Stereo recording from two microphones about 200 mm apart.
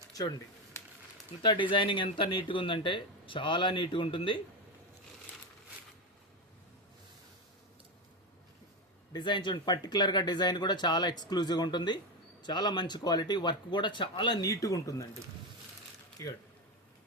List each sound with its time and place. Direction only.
0.1 s a sound: 20° left (ahead or behind)
1.4 s speech: 25° left (ahead or behind)
9.1 s speech: 25° left (ahead or behind)
16.2 s speech: 15° left (ahead or behind)